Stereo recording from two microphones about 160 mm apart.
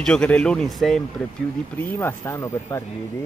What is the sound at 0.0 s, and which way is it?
Speech, 5° left (ahead or behind).